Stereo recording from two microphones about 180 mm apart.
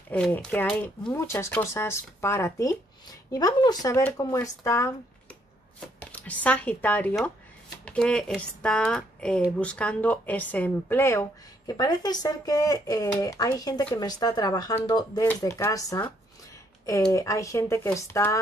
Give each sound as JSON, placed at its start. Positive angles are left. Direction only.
{"t": 0.1, "sound": "speech", "side_deg": 5}
{"t": 5.9, "sound": "speech", "side_deg": 10}
{"t": 17.1, "sound": "speech", "side_deg": 15}